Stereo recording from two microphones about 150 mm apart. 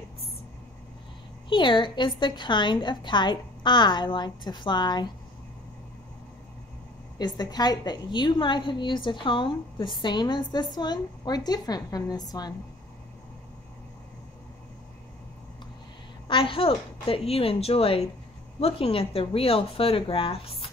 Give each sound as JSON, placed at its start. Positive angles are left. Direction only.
{"t": 1.5, "sound": "a woman's voice", "side_deg": 30}
{"t": 7.2, "sound": "a woman's voice", "side_deg": 25}
{"t": 16.3, "sound": "a woman's voice", "side_deg": 35}